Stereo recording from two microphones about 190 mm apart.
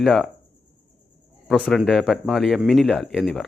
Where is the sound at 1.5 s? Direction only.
Centre (ahead or behind).